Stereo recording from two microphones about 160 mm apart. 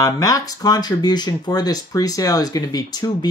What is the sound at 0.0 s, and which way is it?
Speech, 20° left (ahead or behind).